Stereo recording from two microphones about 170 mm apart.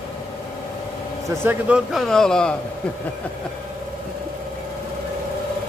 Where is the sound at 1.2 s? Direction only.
15° right (ahead or behind).